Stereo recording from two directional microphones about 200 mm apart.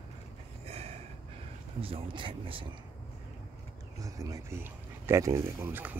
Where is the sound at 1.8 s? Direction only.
25° right (ahead or behind).